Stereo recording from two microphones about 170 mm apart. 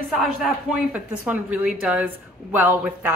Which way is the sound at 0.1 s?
Centre (ahead or behind).